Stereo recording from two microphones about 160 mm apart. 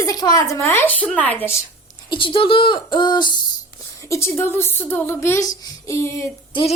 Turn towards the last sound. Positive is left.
turn(degrees=20)  # may be behind; listen again after turning